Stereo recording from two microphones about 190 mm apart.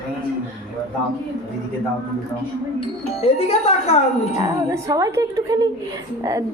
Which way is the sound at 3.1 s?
35° left (ahead or behind).